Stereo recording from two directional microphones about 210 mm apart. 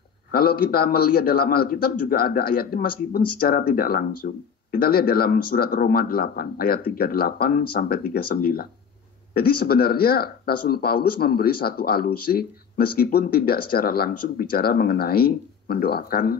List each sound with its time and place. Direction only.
0.3 s speech: 45° left (ahead or behind)